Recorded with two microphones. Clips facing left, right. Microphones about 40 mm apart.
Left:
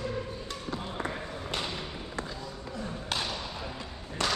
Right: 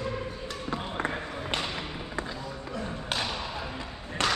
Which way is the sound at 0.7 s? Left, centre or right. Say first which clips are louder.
Right 4 dB; right.